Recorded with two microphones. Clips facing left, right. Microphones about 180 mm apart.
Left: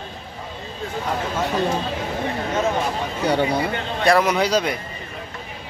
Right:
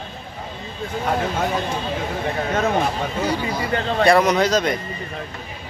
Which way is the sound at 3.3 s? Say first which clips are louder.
Left 4 dB; 65° left (ahead or behind).